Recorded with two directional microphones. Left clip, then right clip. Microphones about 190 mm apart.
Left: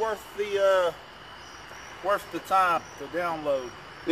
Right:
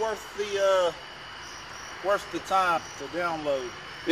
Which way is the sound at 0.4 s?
Centre (ahead or behind).